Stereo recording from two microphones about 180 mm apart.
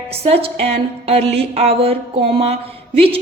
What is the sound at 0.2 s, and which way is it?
A woman's voice, 35° right (ahead or behind).